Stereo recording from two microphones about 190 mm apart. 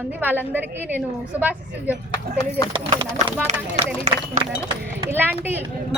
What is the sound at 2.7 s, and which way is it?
Speech, 25° right (ahead or behind).